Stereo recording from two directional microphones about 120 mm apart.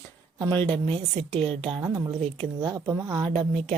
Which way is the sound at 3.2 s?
60° right (ahead or behind).